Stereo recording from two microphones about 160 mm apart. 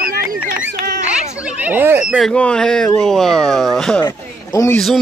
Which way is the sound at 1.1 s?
10° right (ahead or behind).